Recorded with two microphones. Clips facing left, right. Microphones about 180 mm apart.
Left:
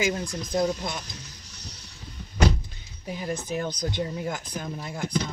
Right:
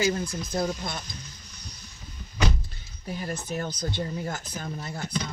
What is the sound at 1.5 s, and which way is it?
Music, 75° left (ahead or behind).